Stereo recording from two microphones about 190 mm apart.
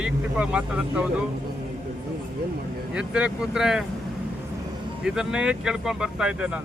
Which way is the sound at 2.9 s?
5° right (ahead or behind).